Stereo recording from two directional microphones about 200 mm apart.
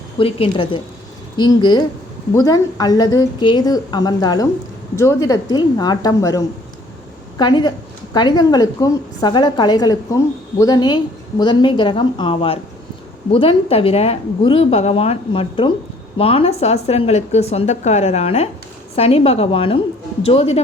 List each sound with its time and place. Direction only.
0.2 s a woman's voice: 30° left (ahead or behind)